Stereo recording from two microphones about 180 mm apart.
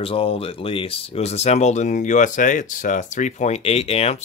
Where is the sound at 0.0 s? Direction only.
30° left (ahead or behind).